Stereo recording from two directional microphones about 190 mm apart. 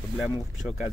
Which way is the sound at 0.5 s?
Centre (ahead or behind).